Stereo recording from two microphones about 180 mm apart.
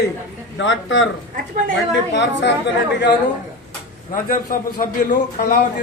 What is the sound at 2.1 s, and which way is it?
Speech, 80° left.